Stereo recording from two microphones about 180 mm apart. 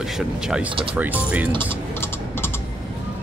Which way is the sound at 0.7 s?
30° right (ahead or behind).